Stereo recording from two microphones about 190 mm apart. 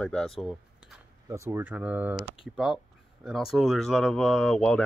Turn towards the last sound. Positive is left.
turn(degrees=5)  # may be behind; listen again after turning